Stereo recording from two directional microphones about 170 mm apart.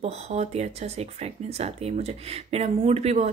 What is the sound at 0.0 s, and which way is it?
Speech, 40° right (ahead or behind).